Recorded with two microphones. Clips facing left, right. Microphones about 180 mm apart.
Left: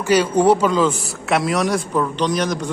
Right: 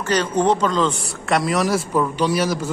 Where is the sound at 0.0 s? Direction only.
10° left (ahead or behind).